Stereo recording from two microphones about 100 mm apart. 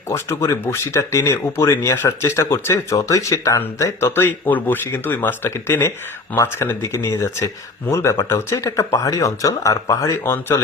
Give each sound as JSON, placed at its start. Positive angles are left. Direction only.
{"t": 0.1, "sound": "speech", "side_deg": 30}
{"t": 10.2, "sound": "speech", "side_deg": 20}